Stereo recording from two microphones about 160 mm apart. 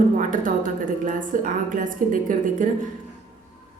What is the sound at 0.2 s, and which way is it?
A woman's voice, 55° right (ahead or behind).